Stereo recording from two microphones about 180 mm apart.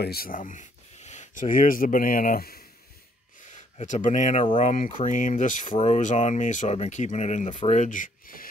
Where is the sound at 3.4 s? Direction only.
45° left (ahead or behind).